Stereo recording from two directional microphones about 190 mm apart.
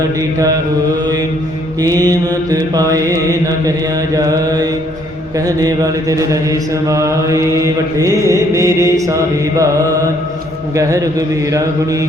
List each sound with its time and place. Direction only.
1.8 s mantra: 20° right (ahead or behind)
10.8 s mantra: 15° right (ahead or behind)